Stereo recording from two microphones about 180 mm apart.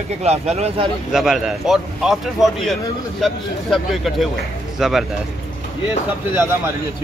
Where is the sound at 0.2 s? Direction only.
35° right (ahead or behind).